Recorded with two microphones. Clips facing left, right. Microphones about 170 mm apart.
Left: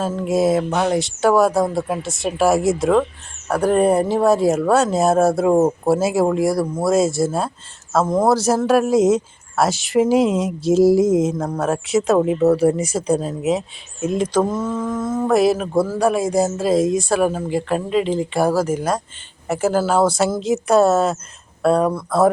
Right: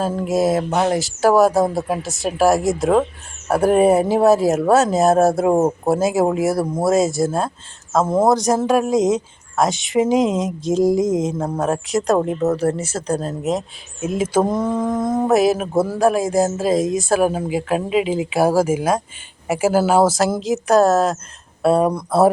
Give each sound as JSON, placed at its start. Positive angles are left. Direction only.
{"t": 0.1, "sound": "speech", "side_deg": 0}
{"t": 8.0, "sound": "mantra", "side_deg": -5}
{"t": 8.6, "sound": "speech", "side_deg": 5}
{"t": 14.4, "sound": "mantra", "side_deg": -15}
{"t": 15.3, "sound": "speech", "side_deg": 0}
{"t": 15.7, "sound": "a man's voice", "side_deg": -25}
{"t": 16.0, "sound": "speech", "side_deg": 0}
{"t": 19.5, "sound": "mantra", "side_deg": -10}
{"t": 20.4, "sound": "speech", "side_deg": 0}
{"t": 21.8, "sound": "mantra", "side_deg": -15}